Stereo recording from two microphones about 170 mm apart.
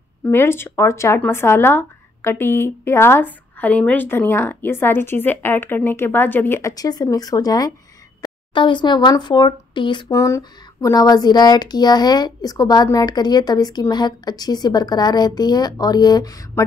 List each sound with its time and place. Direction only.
0.2 s speech: 15° left (ahead or behind)